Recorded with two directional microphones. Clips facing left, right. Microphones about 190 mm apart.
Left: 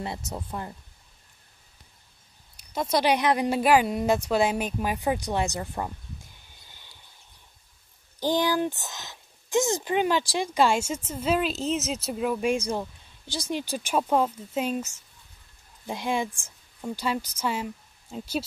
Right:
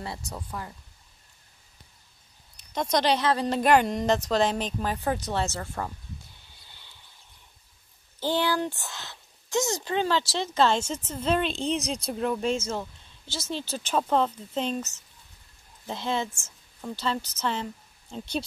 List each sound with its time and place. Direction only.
0.0 s speech: 20° left (ahead or behind)
2.5 s speech: 5° left (ahead or behind)
6.7 s a sound: 15° left (ahead or behind)
8.2 s speech: 15° left (ahead or behind)